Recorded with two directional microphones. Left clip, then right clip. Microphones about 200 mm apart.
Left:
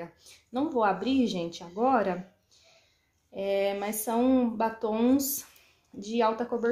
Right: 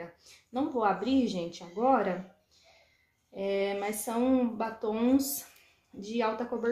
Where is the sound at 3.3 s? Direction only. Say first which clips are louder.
Left 3 dB; 40° left (ahead or behind).